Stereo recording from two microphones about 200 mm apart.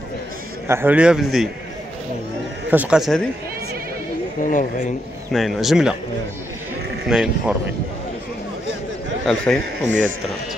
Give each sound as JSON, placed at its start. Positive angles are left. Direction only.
{"t": 0.7, "sound": "a man's voice", "side_deg": -10}
{"t": 2.7, "sound": "a man's voice", "side_deg": -5}
{"t": 4.4, "sound": "speech", "side_deg": 40}
{"t": 5.3, "sound": "a man's voice", "side_deg": 0}
{"t": 7.1, "sound": "a man's voice", "side_deg": -5}
{"t": 9.2, "sound": "a man's voice", "side_deg": 5}